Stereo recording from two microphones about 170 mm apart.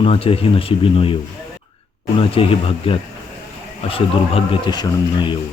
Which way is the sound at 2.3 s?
35° left (ahead or behind).